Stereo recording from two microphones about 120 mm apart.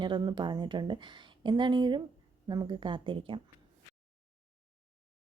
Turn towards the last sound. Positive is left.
turn(degrees=-45)  # may be behind; listen again after turning